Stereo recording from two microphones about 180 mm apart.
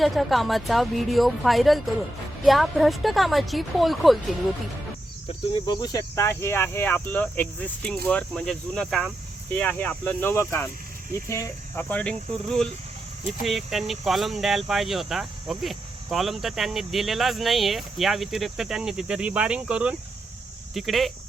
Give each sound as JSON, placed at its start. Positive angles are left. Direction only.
{"t": 0.0, "sound": "speech", "side_deg": 0}
{"t": 5.6, "sound": "speech", "side_deg": 20}